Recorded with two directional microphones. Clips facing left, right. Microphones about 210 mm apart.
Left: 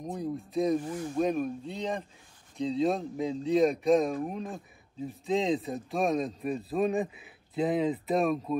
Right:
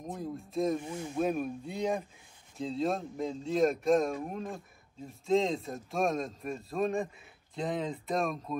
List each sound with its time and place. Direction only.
0.0 s speech: centre (ahead or behind)
0.7 s speech: 25° right (ahead or behind)
1.1 s speech: 5° right (ahead or behind)